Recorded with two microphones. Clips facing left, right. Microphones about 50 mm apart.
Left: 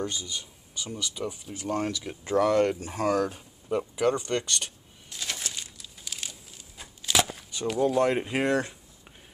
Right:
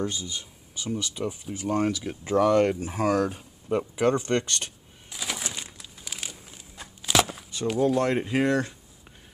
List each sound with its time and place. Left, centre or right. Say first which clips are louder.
0.0 s speech: right 2 dB; centre
0.7 s speech: right 3 dB; centre
4.0 s speech: right 3 dB; right
5.1 s bird: right 2 dB; centre
5.5 s crumpling: right 2 dB; right
6.8 s shuffling cards: right 3 dB; centre
7.9 s speech: even; centre
8.3 s speech: right 2 dB; left